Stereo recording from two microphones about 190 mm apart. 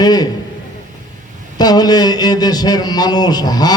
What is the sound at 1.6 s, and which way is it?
Mantra, 20° left (ahead or behind).